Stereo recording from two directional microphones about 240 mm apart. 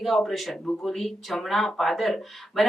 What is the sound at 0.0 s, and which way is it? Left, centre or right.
A woman's voice, centre.